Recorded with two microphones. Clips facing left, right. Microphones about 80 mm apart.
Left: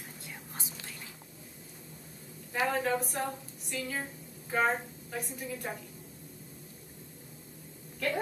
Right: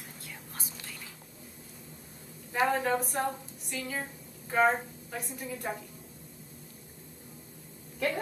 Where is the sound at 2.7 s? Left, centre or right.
Centre.